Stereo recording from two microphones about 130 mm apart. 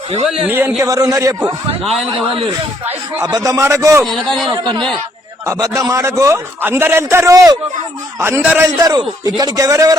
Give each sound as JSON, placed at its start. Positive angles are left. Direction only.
{"t": 0.4, "sound": "speech", "side_deg": -15}
{"t": 0.8, "sound": "a man's voice", "side_deg": -25}
{"t": 2.8, "sound": "speech", "side_deg": -15}
{"t": 3.3, "sound": "a man's voice", "side_deg": -25}
{"t": 4.0, "sound": "a man's voice", "side_deg": 0}
{"t": 4.4, "sound": "a man's voice", "side_deg": -40}
{"t": 5.5, "sound": "a man's voice", "side_deg": -25}
{"t": 8.2, "sound": "speech", "side_deg": -15}
{"t": 8.8, "sound": "a man's voice", "side_deg": -30}